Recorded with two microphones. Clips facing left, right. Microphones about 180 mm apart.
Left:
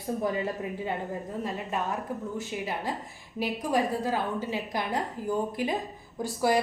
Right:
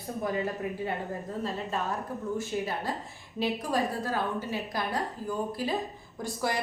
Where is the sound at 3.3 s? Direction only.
15° left (ahead or behind).